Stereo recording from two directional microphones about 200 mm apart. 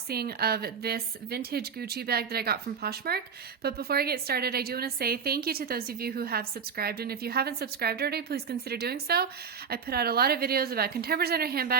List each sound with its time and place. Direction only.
0.1 s a woman's voice: 50° right (ahead or behind)